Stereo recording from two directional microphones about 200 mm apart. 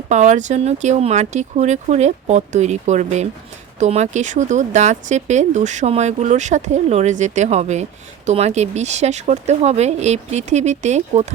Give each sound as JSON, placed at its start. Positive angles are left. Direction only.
{"t": 0.1, "sound": "speech", "side_deg": -35}